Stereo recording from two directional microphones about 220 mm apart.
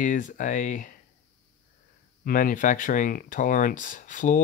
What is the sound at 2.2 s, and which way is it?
Speech, 40° left (ahead or behind).